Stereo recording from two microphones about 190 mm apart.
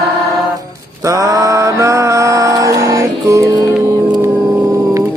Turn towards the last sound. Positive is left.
turn(degrees=-15)  # may be behind; listen again after turning